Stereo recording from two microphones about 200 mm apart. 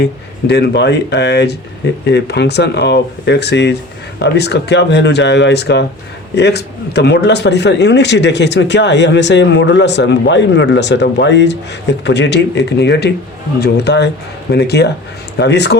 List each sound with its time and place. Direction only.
0.0 s speech: 55° left (ahead or behind)